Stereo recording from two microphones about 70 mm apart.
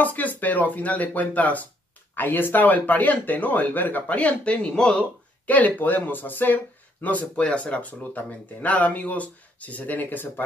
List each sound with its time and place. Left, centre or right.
0.0 s speech: left